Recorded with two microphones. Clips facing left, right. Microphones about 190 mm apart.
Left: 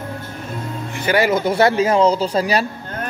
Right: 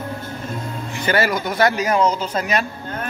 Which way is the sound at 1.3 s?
25° left (ahead or behind).